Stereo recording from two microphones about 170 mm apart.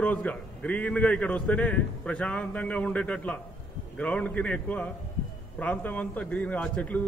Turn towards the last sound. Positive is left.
turn(degrees=5)  # may be behind; listen again after turning